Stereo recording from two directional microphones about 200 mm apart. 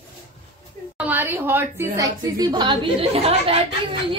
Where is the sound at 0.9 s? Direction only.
10° right (ahead or behind); by 4.2 s 25° right (ahead or behind).